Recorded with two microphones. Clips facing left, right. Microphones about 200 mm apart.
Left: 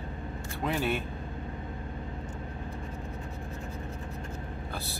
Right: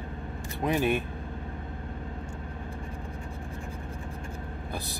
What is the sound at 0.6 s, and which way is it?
Speech, 15° right (ahead or behind).